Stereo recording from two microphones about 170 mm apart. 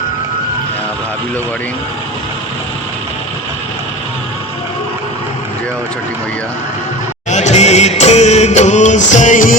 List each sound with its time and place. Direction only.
7.3 s music: 45° left (ahead or behind)